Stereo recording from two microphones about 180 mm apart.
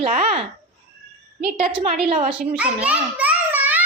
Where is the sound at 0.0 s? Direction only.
40° right (ahead or behind).